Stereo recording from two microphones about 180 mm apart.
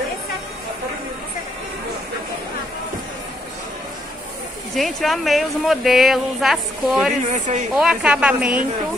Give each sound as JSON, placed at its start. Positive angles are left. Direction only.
{"t": 4.7, "sound": "speech", "side_deg": 0}
{"t": 7.2, "sound": "a woman's voice", "side_deg": -40}
{"t": 7.7, "sound": "speech", "side_deg": -5}